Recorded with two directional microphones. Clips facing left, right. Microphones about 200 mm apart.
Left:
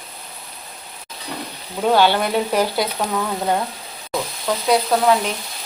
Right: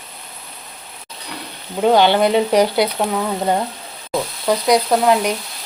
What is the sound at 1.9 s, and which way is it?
Speech, 15° right (ahead or behind).